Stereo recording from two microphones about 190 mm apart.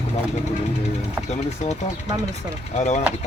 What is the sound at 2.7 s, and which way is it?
Speech, 40° left (ahead or behind).